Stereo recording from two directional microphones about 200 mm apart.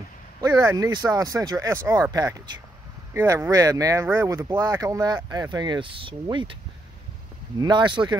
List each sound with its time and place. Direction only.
0.4 s speech: 15° right (ahead or behind)
7.6 s speech: 25° right (ahead or behind)